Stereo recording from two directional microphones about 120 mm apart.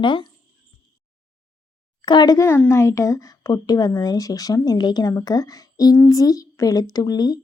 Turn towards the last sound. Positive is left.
turn(degrees=35)  # may be behind; listen again after turning